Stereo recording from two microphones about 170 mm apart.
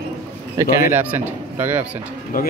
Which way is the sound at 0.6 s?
15° right (ahead or behind).